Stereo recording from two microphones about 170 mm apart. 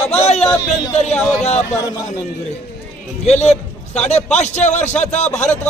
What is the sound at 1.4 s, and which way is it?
Speech, 40° left (ahead or behind).